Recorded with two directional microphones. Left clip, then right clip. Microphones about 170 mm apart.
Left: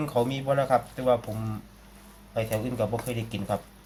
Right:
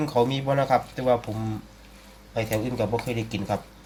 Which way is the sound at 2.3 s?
15° right (ahead or behind).